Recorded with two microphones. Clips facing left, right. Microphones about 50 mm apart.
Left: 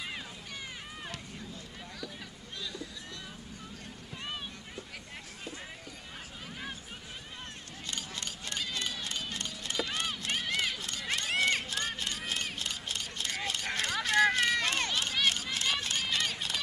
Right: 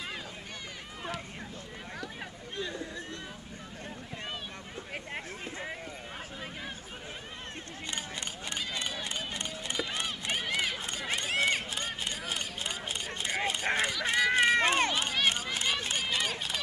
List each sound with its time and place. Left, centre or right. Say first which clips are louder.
7.9 s run: right 1 dB; right
11.4 s a sound: even; centre
14.0 s run: even; right